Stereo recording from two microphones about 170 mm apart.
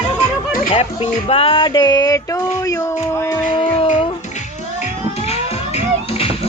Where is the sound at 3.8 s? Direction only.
35° left (ahead or behind).